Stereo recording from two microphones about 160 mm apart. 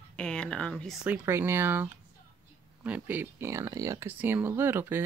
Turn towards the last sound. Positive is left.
turn(degrees=-15)  # may be behind; listen again after turning